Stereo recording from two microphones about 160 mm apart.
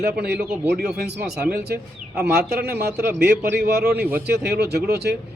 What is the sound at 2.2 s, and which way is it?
A man's voice, 80° right.